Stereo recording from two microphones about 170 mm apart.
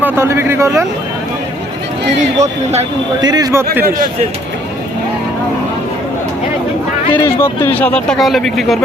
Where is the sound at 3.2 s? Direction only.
25° right (ahead or behind).